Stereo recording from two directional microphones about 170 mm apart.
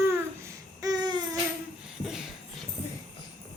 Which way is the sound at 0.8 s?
25° right (ahead or behind).